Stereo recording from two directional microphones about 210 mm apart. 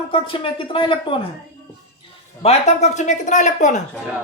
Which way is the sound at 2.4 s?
30° left (ahead or behind).